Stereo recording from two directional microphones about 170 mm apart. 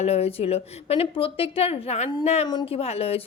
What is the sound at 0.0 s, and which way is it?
A woman's voice, 35° left (ahead or behind).